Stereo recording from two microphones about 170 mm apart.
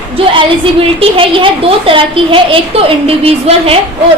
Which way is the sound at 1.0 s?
30° right (ahead or behind).